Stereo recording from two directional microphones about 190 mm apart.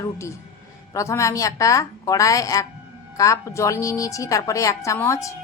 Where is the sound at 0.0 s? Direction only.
15° left (ahead or behind).